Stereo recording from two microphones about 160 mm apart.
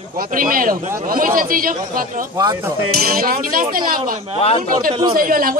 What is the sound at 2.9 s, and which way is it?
Speech, 70° right (ahead or behind).